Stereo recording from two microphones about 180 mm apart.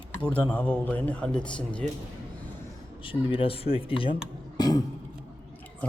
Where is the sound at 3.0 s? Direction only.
30° left (ahead or behind).